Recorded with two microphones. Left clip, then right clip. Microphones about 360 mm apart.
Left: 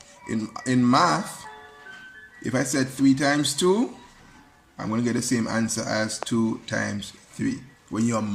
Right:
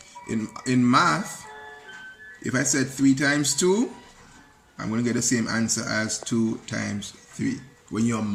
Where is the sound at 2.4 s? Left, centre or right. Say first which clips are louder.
Even; centre.